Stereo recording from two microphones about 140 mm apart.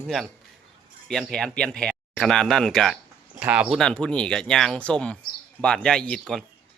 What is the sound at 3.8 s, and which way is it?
Speech, 5° left (ahead or behind).